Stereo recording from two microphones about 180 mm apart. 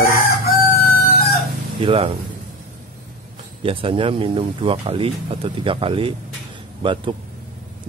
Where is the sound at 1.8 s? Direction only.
30° right (ahead or behind).